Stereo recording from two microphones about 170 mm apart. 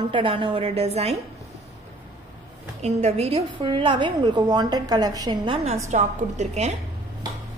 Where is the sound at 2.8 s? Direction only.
40° right (ahead or behind); by 5.5 s 25° right (ahead or behind).